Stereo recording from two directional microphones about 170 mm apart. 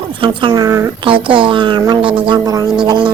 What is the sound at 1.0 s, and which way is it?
Speech, 30° right (ahead or behind).